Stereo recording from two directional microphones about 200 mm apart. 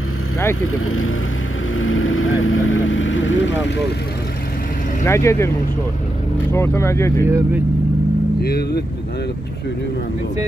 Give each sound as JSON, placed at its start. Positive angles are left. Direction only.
{"t": 0.6, "sound": "speech", "side_deg": 90}
{"t": 1.8, "sound": "vehicle", "side_deg": 90}
{"t": 5.0, "sound": "speech", "side_deg": 15}
{"t": 6.5, "sound": "speech", "side_deg": 15}
{"t": 7.2, "sound": "speech", "side_deg": -10}
{"t": 8.4, "sound": "speech", "side_deg": 50}